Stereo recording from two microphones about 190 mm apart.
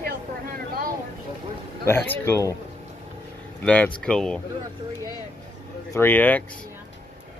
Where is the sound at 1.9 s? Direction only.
10° left (ahead or behind).